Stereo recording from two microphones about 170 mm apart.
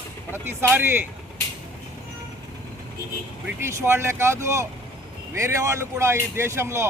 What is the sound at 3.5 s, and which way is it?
A man's voice, 15° right (ahead or behind).